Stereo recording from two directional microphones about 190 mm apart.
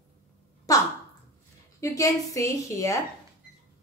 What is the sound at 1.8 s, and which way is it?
A woman's voice, 15° left (ahead or behind).